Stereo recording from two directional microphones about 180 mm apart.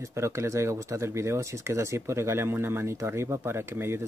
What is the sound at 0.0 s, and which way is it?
Speech, 15° right (ahead or behind).